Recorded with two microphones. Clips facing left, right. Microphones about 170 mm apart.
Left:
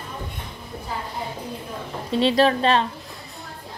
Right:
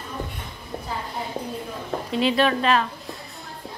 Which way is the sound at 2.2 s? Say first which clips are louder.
Left 3 dB; 35° left (ahead or behind).